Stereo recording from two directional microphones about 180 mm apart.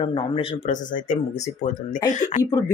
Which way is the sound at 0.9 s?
45° left (ahead or behind).